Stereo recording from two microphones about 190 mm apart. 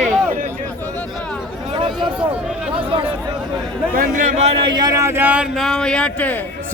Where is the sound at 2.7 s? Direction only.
25° right (ahead or behind).